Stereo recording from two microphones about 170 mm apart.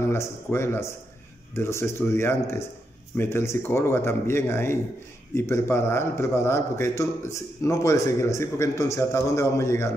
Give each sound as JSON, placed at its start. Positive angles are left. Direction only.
{"t": 0.1, "sound": "a man's voice", "side_deg": 15}